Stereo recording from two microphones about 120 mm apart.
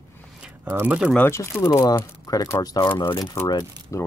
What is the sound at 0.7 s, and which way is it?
Speech, 20° right (ahead or behind).